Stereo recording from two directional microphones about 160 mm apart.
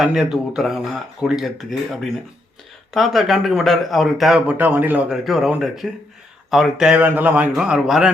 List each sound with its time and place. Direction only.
0.0 s speech: 5° right (ahead or behind)